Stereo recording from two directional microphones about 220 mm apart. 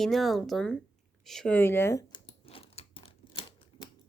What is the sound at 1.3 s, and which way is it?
Chewing, 5° left (ahead or behind).